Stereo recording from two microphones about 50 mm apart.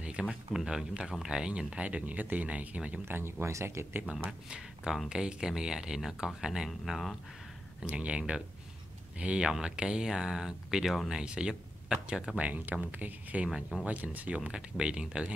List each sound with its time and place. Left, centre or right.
0.0 s a sound: right
0.3 s speech: centre
1.9 s speech: right
3.1 s speech: right
4.3 s speech: centre
6.9 s speech: centre
7.8 s speech: right
12.4 s speech: right
14.4 s speech: right